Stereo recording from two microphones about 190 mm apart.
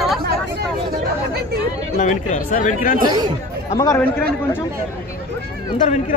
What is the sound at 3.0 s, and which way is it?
Speech, 20° right (ahead or behind).